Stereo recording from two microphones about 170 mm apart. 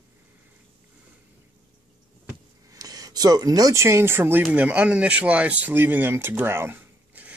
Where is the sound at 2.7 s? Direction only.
20° right (ahead or behind).